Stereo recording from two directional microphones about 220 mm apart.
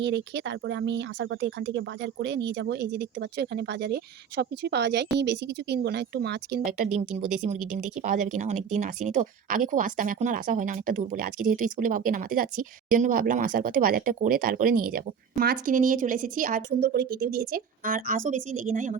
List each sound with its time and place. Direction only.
0.0 s speech: 55° right (ahead or behind)
7.9 s speech: 35° right (ahead or behind)